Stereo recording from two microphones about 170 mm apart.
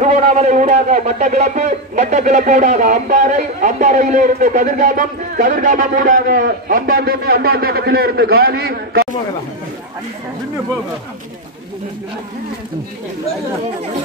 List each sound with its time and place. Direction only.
0.0 s a man's voice: 45° right (ahead or behind); by 9.0 s 65° right (ahead or behind)